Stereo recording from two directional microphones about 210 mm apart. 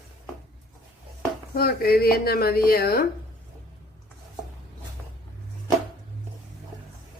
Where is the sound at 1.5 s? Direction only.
45° left (ahead or behind).